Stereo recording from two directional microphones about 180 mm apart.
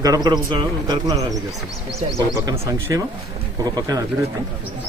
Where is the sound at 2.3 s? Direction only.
20° right (ahead or behind).